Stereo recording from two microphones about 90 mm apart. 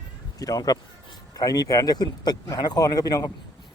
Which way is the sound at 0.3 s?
45° left (ahead or behind).